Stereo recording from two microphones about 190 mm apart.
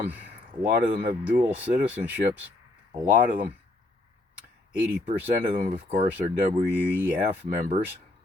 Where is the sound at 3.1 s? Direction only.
45° right (ahead or behind).